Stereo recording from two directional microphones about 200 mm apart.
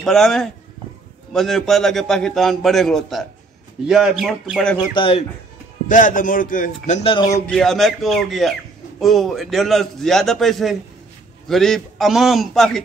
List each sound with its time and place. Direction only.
0.0 s a man's voice: centre (ahead or behind)
4.7 s speech: 25° left (ahead or behind)
5.9 s speech: 40° left (ahead or behind)
7.2 s speech: 15° left (ahead or behind)
7.5 s a man's voice: centre (ahead or behind)